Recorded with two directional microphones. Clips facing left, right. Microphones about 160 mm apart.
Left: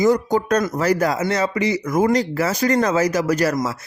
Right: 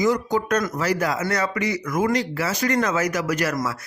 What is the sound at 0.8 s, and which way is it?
Speech, 40° left (ahead or behind).